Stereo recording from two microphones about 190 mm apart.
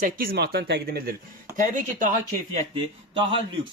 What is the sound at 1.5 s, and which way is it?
Speech, 45° right (ahead or behind).